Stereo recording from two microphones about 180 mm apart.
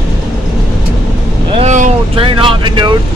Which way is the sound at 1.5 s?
40° right (ahead or behind).